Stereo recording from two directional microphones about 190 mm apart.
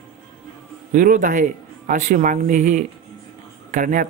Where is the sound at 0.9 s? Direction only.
45° right (ahead or behind).